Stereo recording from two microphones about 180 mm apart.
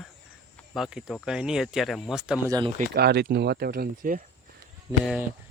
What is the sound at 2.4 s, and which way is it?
Speech, 20° right (ahead or behind).